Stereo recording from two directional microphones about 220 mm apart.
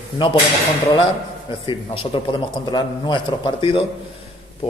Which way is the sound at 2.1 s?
25° left (ahead or behind).